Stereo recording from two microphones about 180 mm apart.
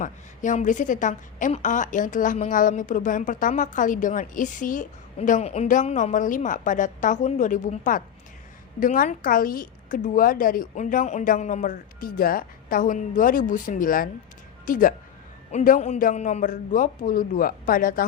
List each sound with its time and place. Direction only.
0.0 s a woman's voice: 45° left (ahead or behind)